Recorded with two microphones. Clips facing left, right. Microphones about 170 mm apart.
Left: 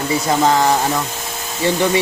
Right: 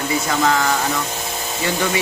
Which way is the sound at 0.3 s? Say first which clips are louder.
Left 5 dB; 35° left (ahead or behind).